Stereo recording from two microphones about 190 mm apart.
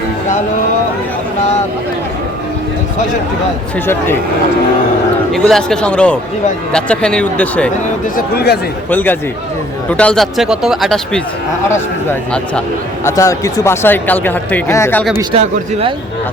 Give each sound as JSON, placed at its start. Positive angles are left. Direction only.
{"t": 3.8, "sound": "speech", "side_deg": 10}
{"t": 5.3, "sound": "speech", "side_deg": 0}
{"t": 8.1, "sound": "speech", "side_deg": 55}
{"t": 8.9, "sound": "speech", "side_deg": 10}
{"t": 13.1, "sound": "speech", "side_deg": 15}
{"t": 15.2, "sound": "a man's voice", "side_deg": -30}